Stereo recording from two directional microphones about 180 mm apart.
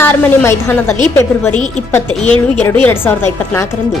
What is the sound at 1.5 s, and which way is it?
Speech, 40° left (ahead or behind).